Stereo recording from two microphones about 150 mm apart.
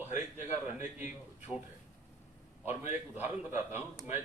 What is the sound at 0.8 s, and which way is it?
Speech, 55° left (ahead or behind).